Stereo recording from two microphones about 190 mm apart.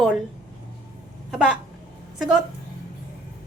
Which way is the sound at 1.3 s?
5° right (ahead or behind).